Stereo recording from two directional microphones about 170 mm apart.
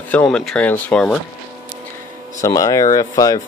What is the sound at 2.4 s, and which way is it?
Speech, 20° left (ahead or behind).